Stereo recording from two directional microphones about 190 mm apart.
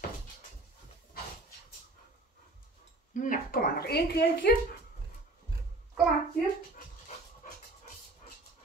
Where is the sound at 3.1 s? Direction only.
45° left (ahead or behind); by 4.5 s 60° left (ahead or behind).